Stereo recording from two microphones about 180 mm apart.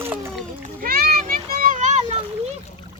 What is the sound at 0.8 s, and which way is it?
Children playing, 55° right (ahead or behind).